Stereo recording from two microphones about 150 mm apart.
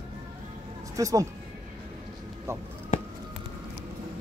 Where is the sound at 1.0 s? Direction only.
20° right (ahead or behind).